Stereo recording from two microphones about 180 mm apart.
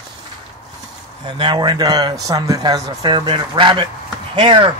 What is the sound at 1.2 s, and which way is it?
Speech, 25° right (ahead or behind).